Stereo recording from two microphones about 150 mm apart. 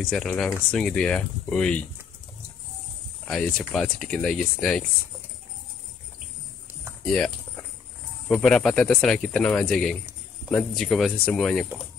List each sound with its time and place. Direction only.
0.0 s speech: 5° left (ahead or behind)
3.3 s speech: 5° left (ahead or behind)
7.1 s speech: 5° left (ahead or behind)